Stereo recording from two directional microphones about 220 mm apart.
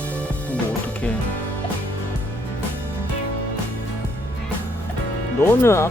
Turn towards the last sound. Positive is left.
turn(degrees=10)  # may be behind; listen again after turning